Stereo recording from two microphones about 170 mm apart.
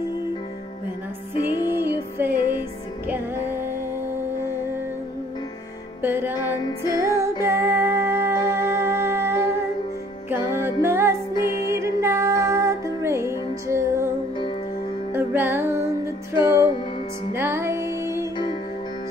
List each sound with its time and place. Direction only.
1.8 s music: 15° right (ahead or behind)
6.0 s music: 15° right (ahead or behind)
10.3 s music: 15° right (ahead or behind)
15.1 s music: 15° right (ahead or behind)